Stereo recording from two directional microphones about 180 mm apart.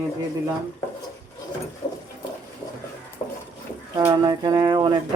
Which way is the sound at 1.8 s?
30° left (ahead or behind).